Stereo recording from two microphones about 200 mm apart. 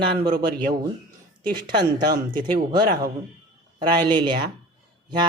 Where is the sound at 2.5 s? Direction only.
50° right (ahead or behind).